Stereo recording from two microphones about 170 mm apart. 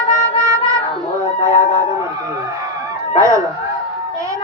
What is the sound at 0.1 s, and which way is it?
Music, 15° right (ahead or behind).